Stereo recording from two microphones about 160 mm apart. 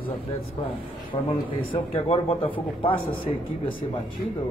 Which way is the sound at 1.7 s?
35° left (ahead or behind).